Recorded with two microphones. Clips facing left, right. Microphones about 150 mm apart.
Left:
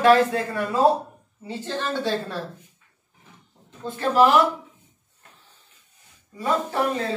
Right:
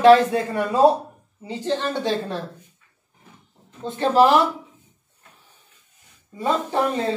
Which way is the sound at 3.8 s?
25° right (ahead or behind).